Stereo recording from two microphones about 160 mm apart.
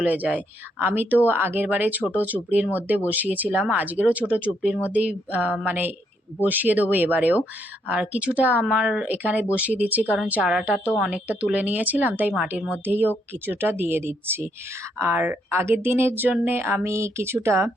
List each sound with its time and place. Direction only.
0.0 s speech: 10° right (ahead or behind)